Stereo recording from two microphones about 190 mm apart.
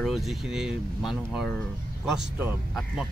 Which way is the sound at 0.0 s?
Centre (ahead or behind).